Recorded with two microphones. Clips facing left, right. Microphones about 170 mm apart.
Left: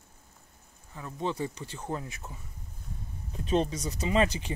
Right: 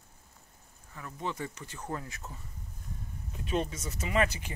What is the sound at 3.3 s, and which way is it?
Speech, 30° left (ahead or behind).